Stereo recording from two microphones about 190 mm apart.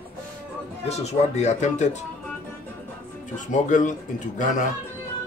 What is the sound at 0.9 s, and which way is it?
A man's voice, 35° left (ahead or behind).